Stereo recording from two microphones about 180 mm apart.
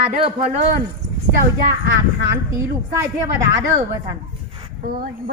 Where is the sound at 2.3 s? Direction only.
15° right (ahead or behind).